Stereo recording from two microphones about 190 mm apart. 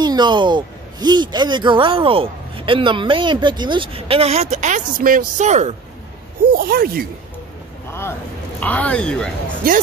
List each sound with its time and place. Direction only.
0.0 s speech: 25° right (ahead or behind)
6.5 s speech: 50° right (ahead or behind)
7.9 s speech: 10° left (ahead or behind)
9.6 s speech: 50° right (ahead or behind)